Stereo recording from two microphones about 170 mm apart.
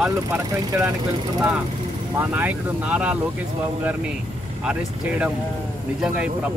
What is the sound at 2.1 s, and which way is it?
Speech, 10° right (ahead or behind).